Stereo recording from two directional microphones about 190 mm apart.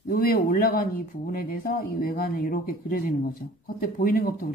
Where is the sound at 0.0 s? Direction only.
45° left (ahead or behind).